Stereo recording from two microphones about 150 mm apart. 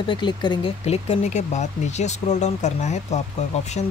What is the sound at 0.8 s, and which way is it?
Speech, 45° left (ahead or behind).